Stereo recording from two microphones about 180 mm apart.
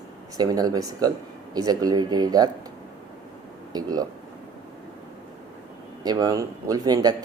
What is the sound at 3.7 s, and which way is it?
Speech, 20° right (ahead or behind).